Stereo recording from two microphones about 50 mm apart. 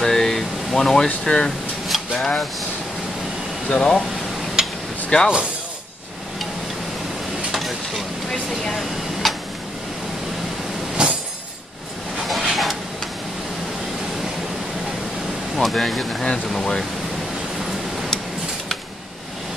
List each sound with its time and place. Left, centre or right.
0.0 s air conditioning: centre
1.2 s speech: centre
2.1 s a sound: centre
3.6 s speech: centre
4.6 s a sound: centre
5.1 s speech: centre
7.5 s a sound: centre
11.0 s chink: centre
12.3 s vehicle: centre
15.5 s speech: centre